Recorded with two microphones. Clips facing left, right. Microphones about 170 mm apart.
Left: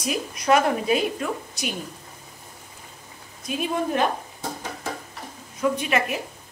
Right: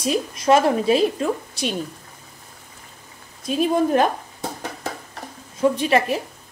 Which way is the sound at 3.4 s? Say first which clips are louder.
Right 6 dB; 35° right (ahead or behind).